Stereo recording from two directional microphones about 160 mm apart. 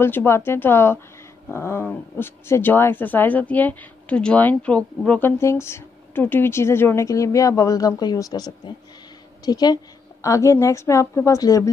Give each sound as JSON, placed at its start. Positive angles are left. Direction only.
{"t": 0.0, "sound": "a woman's voice", "side_deg": 15}